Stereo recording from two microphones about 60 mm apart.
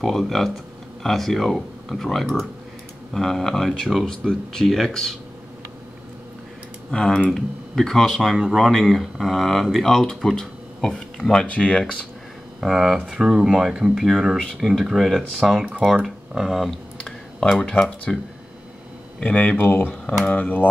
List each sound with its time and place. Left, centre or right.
0.0 s speech: centre
6.9 s speech: centre
11.4 s speech: centre
12.5 s speech: centre
17.0 s a sound: centre
19.1 s speech: left